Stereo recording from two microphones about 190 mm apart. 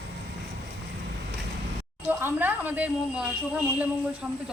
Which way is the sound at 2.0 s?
10° right (ahead or behind).